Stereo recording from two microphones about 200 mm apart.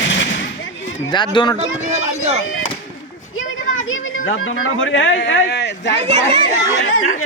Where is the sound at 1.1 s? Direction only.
25° left (ahead or behind).